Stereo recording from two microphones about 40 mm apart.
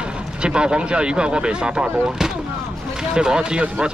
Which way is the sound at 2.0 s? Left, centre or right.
Centre.